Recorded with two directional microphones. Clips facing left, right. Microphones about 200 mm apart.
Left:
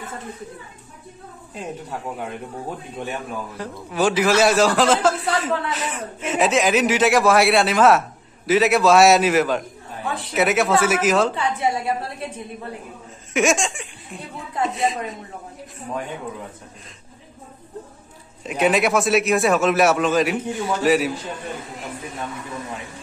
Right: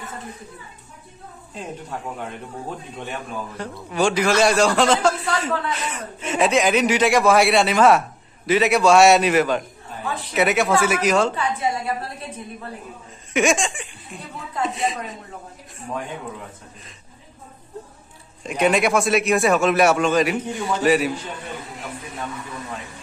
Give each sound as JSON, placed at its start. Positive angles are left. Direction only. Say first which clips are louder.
{"t": 3.0, "sound": "a man's voice", "louder": "left 3 dB", "side_deg": 5}
{"t": 13.3, "sound": "laughter", "louder": "even", "side_deg": 0}
{"t": 14.6, "sound": "a man's voice", "louder": "left 2 dB", "side_deg": 0}
{"t": 18.4, "sound": "a man's voice", "louder": "even", "side_deg": 5}